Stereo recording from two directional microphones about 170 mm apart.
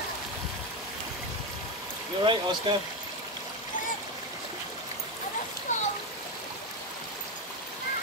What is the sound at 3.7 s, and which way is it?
Stream, 50° left (ahead or behind).